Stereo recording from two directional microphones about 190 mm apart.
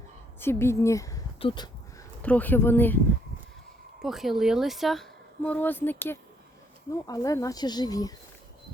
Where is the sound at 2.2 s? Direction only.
10° left (ahead or behind).